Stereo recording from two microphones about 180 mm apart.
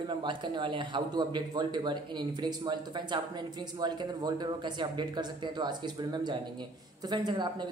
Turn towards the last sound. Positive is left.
turn(degrees=-25)  # may be behind; listen again after turning